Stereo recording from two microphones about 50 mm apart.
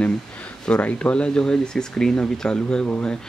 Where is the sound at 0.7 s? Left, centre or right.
Left.